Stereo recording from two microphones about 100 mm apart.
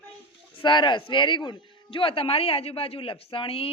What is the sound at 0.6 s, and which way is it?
A man's voice, 55° left (ahead or behind).